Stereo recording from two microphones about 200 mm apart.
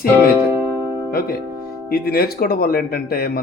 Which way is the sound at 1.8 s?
50° left (ahead or behind).